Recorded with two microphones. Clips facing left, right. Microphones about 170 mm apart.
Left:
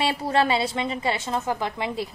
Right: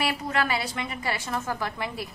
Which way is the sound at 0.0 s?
25° left (ahead or behind).